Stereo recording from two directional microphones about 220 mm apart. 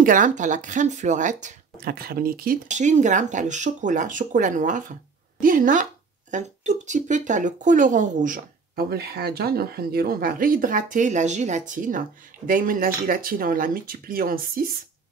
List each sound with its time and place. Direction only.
0.0 s speech: 35° right (ahead or behind)